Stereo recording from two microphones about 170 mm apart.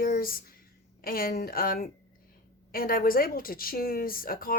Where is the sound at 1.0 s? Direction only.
60° left (ahead or behind).